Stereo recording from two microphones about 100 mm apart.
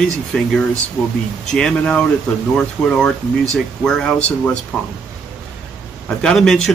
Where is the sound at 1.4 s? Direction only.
5° left (ahead or behind).